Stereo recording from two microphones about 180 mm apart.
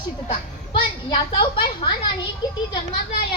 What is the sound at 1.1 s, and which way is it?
A woman's voice, 30° left (ahead or behind).